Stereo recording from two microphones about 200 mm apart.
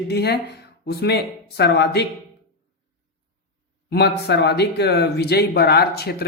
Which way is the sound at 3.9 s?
55° left (ahead or behind).